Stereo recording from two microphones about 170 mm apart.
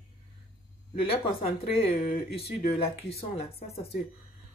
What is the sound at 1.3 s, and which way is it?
Speech, 35° left (ahead or behind).